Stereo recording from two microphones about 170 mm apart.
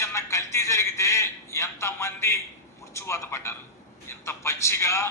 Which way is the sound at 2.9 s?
15° left (ahead or behind).